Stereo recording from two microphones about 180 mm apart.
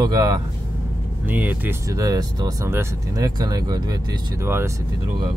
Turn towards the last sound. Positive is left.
turn(degrees=-15)  # may be behind; listen again after turning